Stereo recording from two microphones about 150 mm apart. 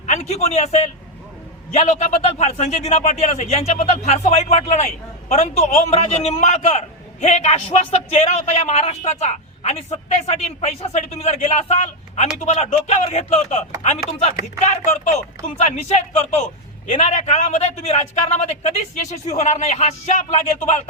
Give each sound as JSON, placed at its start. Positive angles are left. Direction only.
{"t": 0.0, "sound": "a man's voice", "side_deg": 50}
{"t": 14.7, "sound": "a man's voice", "side_deg": 50}